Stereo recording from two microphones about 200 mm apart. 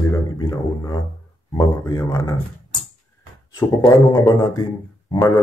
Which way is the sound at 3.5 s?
15° left (ahead or behind).